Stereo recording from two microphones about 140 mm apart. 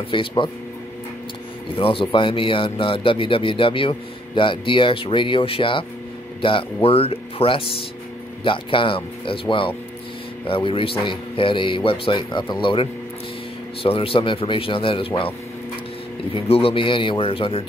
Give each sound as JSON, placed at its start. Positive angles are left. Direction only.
{"t": 0.1, "sound": "a man's voice", "side_deg": 35}
{"t": 1.8, "sound": "a man's voice", "side_deg": 40}
{"t": 13.8, "sound": "a man's voice", "side_deg": 40}
{"t": 16.3, "sound": "a man's voice", "side_deg": 45}